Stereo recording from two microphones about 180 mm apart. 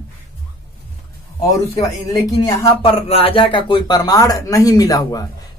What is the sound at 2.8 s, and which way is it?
Speech, 30° left (ahead or behind).